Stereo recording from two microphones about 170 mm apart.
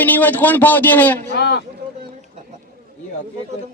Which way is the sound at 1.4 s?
80° left.